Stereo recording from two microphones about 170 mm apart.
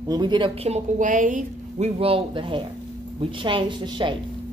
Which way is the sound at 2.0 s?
35° right (ahead or behind).